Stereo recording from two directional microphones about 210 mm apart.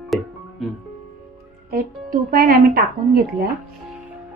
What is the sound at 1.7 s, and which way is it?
Speech, 45° right (ahead or behind).